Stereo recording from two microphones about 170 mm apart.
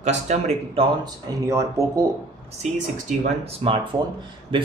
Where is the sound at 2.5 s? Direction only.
40° right (ahead or behind).